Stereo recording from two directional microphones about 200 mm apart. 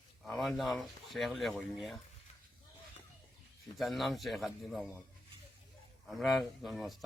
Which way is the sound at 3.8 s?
Centre (ahead or behind).